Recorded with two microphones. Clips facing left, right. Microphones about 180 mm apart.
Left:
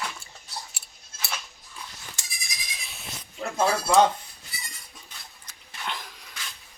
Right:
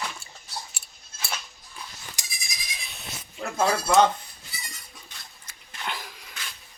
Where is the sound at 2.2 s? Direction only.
15° right (ahead or behind).